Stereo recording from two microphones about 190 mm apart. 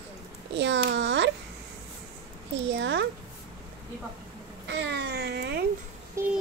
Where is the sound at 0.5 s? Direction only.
70° right (ahead or behind).